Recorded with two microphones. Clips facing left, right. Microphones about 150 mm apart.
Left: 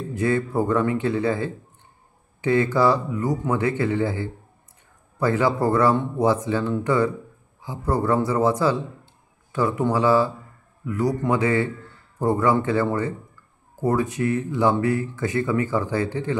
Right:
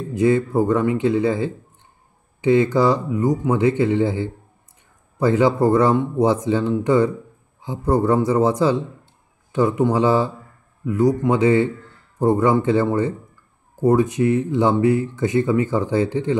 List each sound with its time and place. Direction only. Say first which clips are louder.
0.1 s speech: right 5 dB; 20° right (ahead or behind)